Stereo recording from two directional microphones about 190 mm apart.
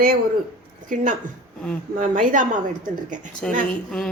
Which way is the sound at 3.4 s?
5° left (ahead or behind).